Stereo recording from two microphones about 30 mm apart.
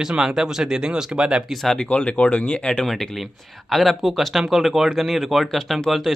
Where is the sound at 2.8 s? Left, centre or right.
Centre.